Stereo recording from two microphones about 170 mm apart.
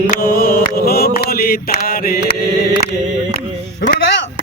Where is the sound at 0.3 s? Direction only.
60° left (ahead or behind).